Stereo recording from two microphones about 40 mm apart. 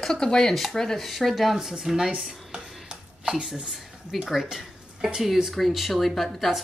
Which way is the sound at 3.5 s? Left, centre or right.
Centre.